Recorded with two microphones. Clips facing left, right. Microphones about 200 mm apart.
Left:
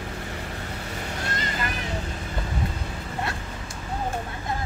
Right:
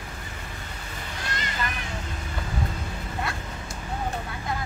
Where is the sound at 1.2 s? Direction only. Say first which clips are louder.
Even; 40° left (ahead or behind).